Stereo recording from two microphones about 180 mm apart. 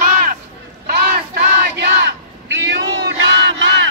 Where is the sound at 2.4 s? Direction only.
80° right.